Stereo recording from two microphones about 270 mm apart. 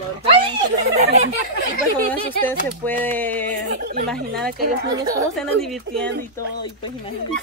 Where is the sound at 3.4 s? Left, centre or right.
Right.